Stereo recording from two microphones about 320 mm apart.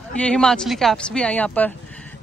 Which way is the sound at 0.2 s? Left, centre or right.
Centre.